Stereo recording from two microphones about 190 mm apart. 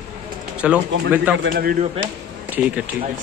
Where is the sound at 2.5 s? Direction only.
10° right (ahead or behind).